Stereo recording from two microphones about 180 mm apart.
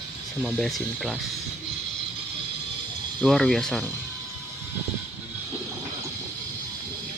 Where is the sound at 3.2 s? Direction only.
5° left (ahead or behind).